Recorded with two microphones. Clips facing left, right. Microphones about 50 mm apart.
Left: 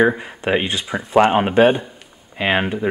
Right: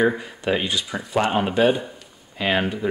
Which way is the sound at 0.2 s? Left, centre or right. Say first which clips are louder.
Left 4 dB; left.